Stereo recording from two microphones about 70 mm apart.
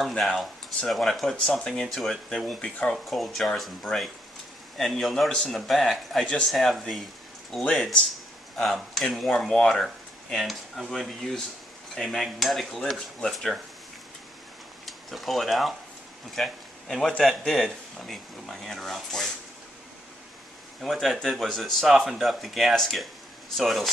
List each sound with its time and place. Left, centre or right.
0.2 s speech: centre
3.1 s speech: centre
6.2 s speech: centre
6.5 s speech: centre
8.5 s speech: centre
14.9 s a man's voice: centre
20.8 s speech: centre